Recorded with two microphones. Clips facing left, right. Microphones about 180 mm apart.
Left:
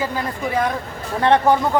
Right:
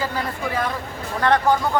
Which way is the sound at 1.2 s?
25° left (ahead or behind).